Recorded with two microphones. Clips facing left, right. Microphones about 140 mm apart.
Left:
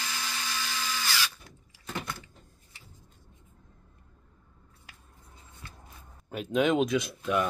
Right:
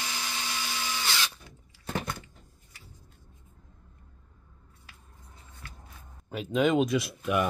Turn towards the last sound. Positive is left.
turn(degrees=-5)  # may be behind; listen again after turning